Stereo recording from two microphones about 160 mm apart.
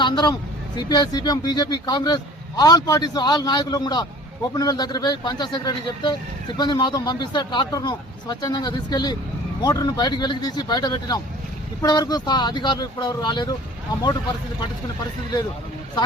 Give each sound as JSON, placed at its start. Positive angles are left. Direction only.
{"t": 0.0, "sound": "speech", "side_deg": 25}